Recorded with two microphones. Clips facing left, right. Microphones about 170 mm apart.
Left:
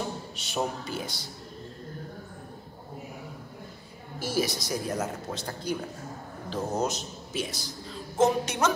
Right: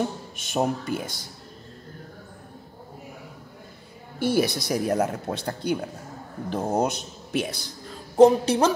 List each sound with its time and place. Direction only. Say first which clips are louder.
0.4 s speech: right 7 dB; 50° right (ahead or behind)
4.2 s speech: right 6 dB; 60° right (ahead or behind)
8.2 s speech: right 8 dB; 30° right (ahead or behind)